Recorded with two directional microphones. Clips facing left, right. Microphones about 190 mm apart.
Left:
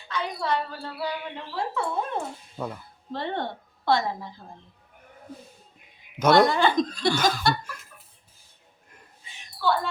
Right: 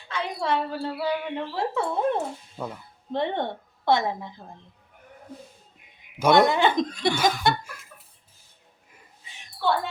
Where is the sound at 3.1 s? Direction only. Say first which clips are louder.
Right 4 dB; 20° right (ahead or behind).